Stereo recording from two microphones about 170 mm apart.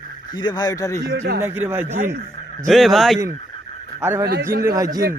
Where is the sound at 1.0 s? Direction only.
90° right.